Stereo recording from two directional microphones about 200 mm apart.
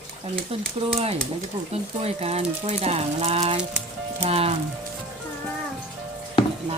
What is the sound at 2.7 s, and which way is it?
Speech, 30° right (ahead or behind).